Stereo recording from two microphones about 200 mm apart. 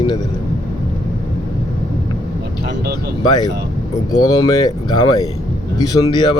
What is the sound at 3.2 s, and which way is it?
Speech, 20° left (ahead or behind).